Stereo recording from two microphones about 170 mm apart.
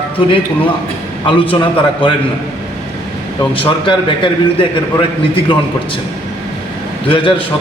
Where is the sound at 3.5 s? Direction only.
30° left (ahead or behind).